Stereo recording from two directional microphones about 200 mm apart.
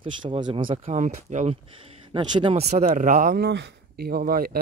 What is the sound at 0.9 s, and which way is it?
Speech, 35° right (ahead or behind).